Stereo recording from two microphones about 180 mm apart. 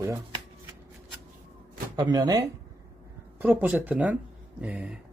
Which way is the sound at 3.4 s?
10° right (ahead or behind).